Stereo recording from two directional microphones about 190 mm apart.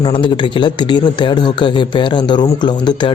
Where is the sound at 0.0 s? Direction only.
25° left (ahead or behind).